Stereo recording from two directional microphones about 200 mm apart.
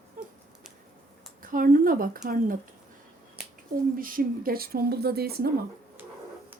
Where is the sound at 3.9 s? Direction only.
45° right (ahead or behind).